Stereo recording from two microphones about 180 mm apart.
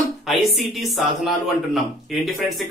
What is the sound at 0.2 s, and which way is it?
Speech, centre (ahead or behind).